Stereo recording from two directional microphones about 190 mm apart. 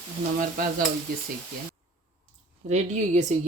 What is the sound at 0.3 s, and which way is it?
Speech, 45° right (ahead or behind).